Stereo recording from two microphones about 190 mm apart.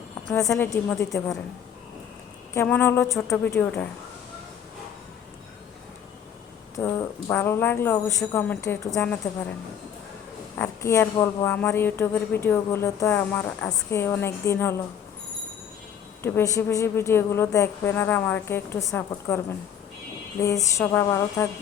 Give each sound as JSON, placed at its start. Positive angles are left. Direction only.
{"t": 0.3, "sound": "a woman's voice", "side_deg": 0}
{"t": 0.7, "sound": "speech", "side_deg": 15}
{"t": 2.5, "sound": "speech", "side_deg": 10}
{"t": 6.7, "sound": "speech", "side_deg": 10}
{"t": 10.6, "sound": "speech", "side_deg": 10}
{"t": 16.2, "sound": "speech", "side_deg": 15}